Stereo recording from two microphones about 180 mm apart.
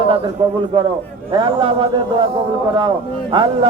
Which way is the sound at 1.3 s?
30° right (ahead or behind).